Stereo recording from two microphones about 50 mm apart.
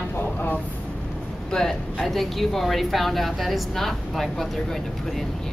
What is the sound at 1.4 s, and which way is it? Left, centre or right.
A woman's voice, centre.